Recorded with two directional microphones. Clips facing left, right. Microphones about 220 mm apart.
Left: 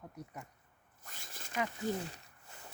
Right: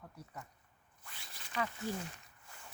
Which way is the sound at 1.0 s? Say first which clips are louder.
Left 4 dB; 45° left (ahead or behind).